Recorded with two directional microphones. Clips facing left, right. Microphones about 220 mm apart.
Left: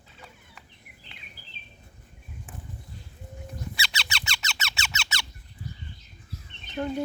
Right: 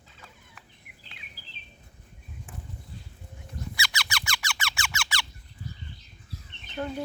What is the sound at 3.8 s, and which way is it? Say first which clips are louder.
Squeak: right 1 dB; 25° left (ahead or behind).